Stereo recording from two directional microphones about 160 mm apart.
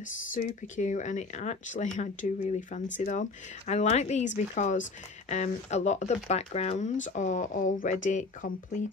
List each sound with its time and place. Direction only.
0.3 s speech: 50° left (ahead or behind)